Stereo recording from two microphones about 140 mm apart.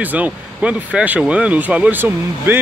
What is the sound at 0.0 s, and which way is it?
Speech, 10° right (ahead or behind).